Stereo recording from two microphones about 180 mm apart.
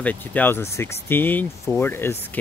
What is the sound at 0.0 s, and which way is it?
Speech, 10° left (ahead or behind).